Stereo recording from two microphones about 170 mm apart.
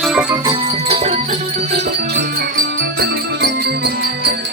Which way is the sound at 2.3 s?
60° right (ahead or behind).